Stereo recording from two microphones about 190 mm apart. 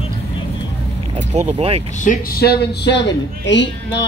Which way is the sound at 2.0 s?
45° left (ahead or behind).